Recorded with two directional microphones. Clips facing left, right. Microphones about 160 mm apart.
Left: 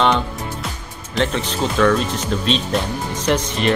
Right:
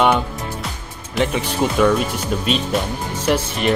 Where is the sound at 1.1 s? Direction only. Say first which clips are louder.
Right 1 dB; 10° right (ahead or behind).